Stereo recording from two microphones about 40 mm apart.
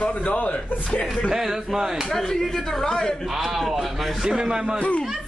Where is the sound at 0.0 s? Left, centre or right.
Left.